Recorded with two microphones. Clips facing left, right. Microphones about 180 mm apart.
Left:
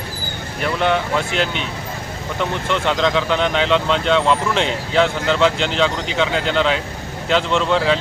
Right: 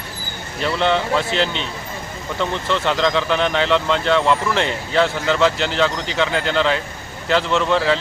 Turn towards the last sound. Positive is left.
turn(degrees=15)  # may be behind; listen again after turning